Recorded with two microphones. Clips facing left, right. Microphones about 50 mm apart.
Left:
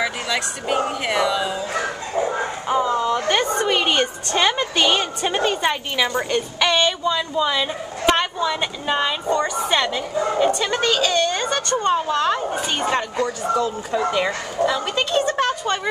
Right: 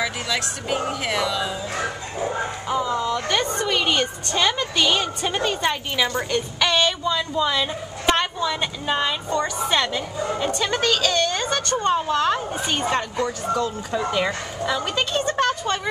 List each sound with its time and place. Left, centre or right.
0.0 s a woman's voice: centre
2.7 s a woman's voice: centre